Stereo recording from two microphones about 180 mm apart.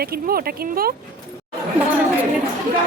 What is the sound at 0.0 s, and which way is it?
Speech, 55° right (ahead or behind).